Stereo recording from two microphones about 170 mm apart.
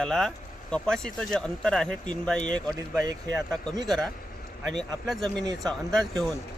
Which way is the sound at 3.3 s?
Centre (ahead or behind).